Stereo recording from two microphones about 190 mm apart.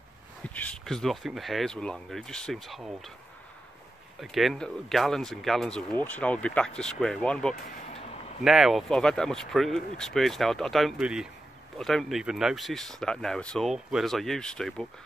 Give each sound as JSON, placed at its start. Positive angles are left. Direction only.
{"t": 0.4, "sound": "speech", "side_deg": 5}
{"t": 4.2, "sound": "speech", "side_deg": 0}
{"t": 7.8, "sound": "a sound", "side_deg": 35}
{"t": 8.5, "sound": "speech", "side_deg": 0}